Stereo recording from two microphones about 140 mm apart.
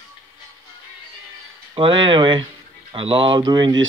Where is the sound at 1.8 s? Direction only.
35° right (ahead or behind).